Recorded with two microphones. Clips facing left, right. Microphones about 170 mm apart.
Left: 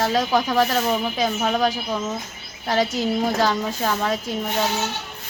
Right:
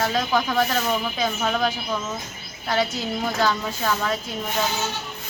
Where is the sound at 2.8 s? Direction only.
35° left (ahead or behind).